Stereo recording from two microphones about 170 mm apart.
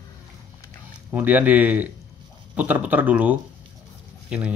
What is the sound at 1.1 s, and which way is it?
A man's voice, 10° right (ahead or behind).